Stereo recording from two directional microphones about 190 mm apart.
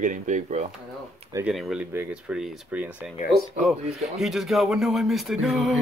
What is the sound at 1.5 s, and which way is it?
Speech, centre (ahead or behind).